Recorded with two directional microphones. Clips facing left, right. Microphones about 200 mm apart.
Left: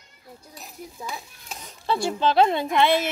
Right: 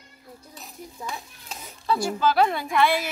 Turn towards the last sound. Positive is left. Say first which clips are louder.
# left 2 dB
turn(degrees=25)  # may be behind; listen again after turning